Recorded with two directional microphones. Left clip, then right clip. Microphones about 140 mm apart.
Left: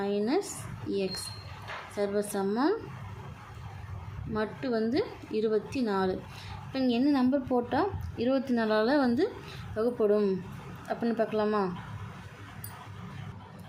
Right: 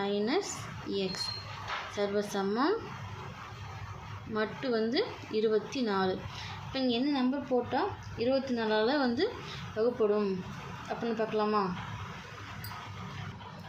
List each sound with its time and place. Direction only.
0.0 s a woman's voice: 30° left (ahead or behind)
4.4 s a woman's voice: 30° left (ahead or behind)
6.7 s a woman's voice: 45° left (ahead or behind)
9.7 s speech: 55° left (ahead or behind)